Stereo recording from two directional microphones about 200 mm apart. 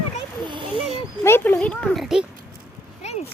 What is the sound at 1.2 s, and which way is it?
A child's voice, 10° left (ahead or behind).